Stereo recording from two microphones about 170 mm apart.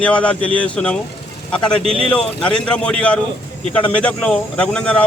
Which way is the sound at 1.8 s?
35° right (ahead or behind).